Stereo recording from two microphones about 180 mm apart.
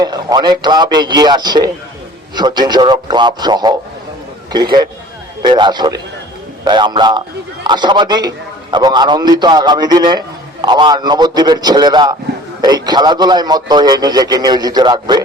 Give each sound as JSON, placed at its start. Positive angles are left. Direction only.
{"t": 0.0, "sound": "a man's voice", "side_deg": -20}